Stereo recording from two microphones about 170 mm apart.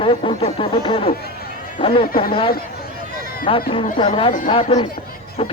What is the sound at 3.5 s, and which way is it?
Speech, 30° left (ahead or behind).